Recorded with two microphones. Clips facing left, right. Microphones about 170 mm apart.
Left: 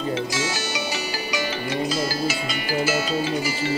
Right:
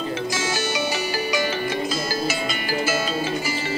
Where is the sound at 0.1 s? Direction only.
50° right (ahead or behind).